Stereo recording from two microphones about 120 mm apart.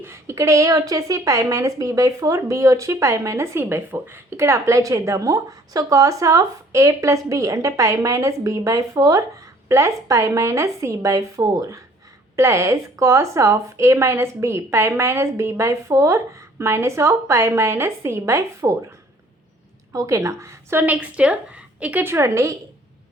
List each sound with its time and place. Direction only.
0.0 s speech: 20° right (ahead or behind)
19.9 s speech: 25° right (ahead or behind)